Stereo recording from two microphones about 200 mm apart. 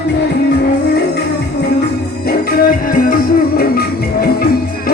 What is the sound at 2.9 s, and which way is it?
Music, 45° left (ahead or behind).